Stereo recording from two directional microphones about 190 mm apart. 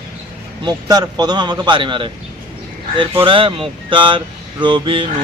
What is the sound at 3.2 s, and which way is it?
Speech, 25° right (ahead or behind).